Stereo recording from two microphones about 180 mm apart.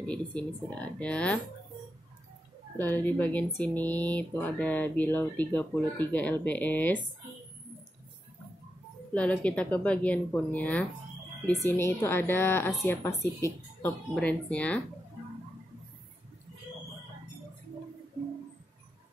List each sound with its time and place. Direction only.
0.0 s speech: 5° left (ahead or behind)
2.8 s speech: 10° left (ahead or behind)
9.1 s speech: 5° left (ahead or behind)